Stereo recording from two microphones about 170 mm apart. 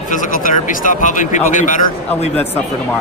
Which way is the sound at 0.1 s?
50° left (ahead or behind).